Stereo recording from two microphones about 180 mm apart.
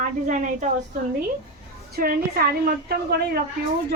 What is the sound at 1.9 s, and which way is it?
A woman's voice, 55° right (ahead or behind).